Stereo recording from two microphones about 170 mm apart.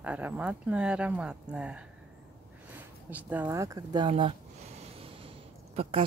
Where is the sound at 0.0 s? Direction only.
10° right (ahead or behind).